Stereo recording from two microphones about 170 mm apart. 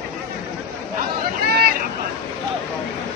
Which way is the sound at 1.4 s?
65° right (ahead or behind).